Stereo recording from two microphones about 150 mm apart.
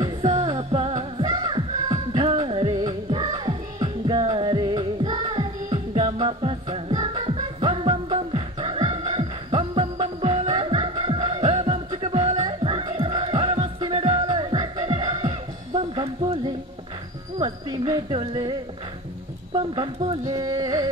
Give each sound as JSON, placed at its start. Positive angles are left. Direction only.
{"t": 0.2, "sound": "music", "side_deg": -45}
{"t": 12.4, "sound": "music", "side_deg": -30}
{"t": 17.9, "sound": "music", "side_deg": -25}
{"t": 19.5, "sound": "a sound", "side_deg": -35}
{"t": 20.2, "sound": "music", "side_deg": -25}